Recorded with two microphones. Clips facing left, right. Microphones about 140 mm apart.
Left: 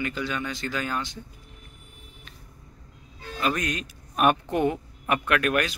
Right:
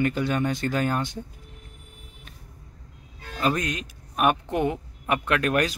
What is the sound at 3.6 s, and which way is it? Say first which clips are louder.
Speech: even; 15° right (ahead or behind).